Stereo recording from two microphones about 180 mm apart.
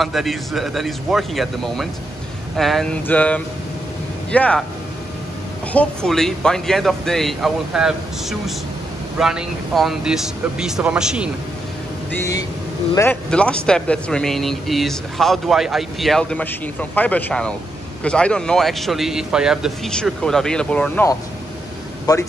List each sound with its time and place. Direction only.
0.0 s speech: centre (ahead or behind)
5.7 s speech: 5° left (ahead or behind)
12.1 s a man's voice: 15° left (ahead or behind)